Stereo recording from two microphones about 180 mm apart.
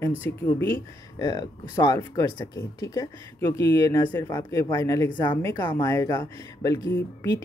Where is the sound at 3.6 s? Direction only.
15° left (ahead or behind).